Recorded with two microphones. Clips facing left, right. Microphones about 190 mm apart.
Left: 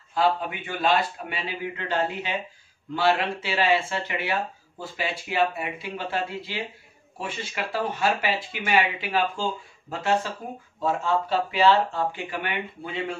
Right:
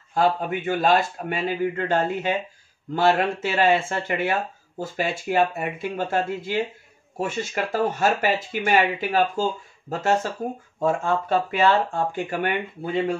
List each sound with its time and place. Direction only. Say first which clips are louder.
0.1 s speech: right 2 dB; 45° right (ahead or behind)